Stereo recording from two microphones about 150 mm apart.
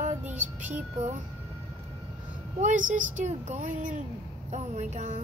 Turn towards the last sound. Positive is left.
turn(degrees=-50)  # may be behind; listen again after turning